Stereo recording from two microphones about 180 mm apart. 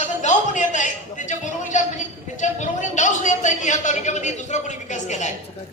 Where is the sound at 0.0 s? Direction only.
40° left (ahead or behind).